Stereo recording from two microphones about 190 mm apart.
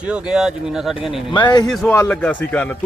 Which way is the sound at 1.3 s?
25° left (ahead or behind).